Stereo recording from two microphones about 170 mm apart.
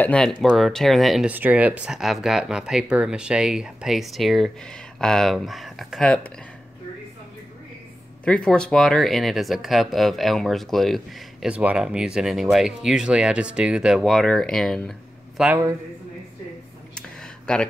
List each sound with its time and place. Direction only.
0.0 s speech: 5° left (ahead or behind)
8.3 s speech: 5° left (ahead or behind)
16.9 s a sound: 5° left (ahead or behind)